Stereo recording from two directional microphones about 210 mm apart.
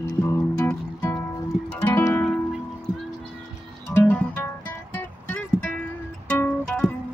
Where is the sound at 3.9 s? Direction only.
10° left (ahead or behind).